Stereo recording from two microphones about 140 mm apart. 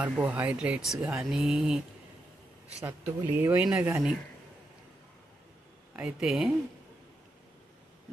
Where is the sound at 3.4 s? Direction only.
10° right (ahead or behind).